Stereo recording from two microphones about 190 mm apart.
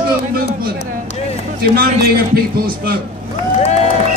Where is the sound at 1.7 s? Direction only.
50° right (ahead or behind).